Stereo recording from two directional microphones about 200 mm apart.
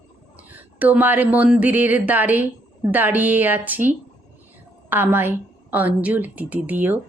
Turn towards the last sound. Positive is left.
turn(degrees=-10)  # may be behind; listen again after turning